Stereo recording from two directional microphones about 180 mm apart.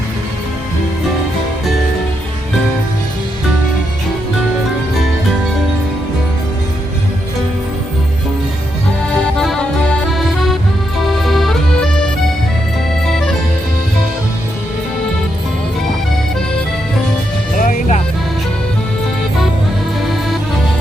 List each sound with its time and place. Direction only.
9.4 s music: 5° left (ahead or behind)
13.1 s music: centre (ahead or behind)
17.6 s music: 45° left (ahead or behind)
20.0 s music: centre (ahead or behind)